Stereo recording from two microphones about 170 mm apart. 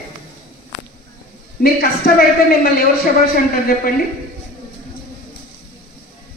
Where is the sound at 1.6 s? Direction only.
65° left (ahead or behind).